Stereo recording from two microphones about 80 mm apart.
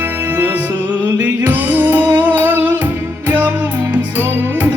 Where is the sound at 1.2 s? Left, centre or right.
Right.